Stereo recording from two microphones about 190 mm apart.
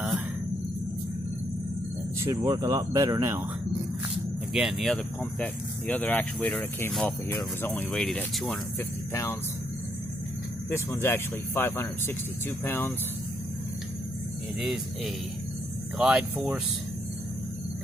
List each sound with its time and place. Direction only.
2.2 s speech: 20° right (ahead or behind)
4.6 s speech: centre (ahead or behind)
9.1 s speech: 15° left (ahead or behind)
10.7 s speech: 15° left (ahead or behind)
16.0 s speech: 5° right (ahead or behind)